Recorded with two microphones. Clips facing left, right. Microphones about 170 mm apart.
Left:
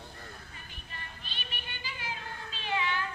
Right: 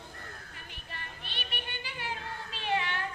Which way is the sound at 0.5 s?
70° right (ahead or behind).